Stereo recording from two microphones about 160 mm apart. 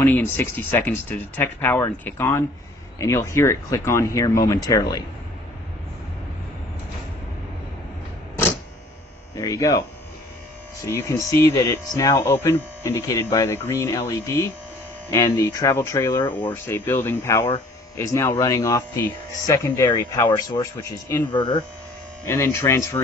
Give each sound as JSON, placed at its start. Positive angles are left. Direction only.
{"t": 0.0, "sound": "speech", "side_deg": 15}
{"t": 9.3, "sound": "speech", "side_deg": 20}
{"t": 10.9, "sound": "speech", "side_deg": 15}
{"t": 21.3, "sound": "speech", "side_deg": 30}
{"t": 22.3, "sound": "speech", "side_deg": 15}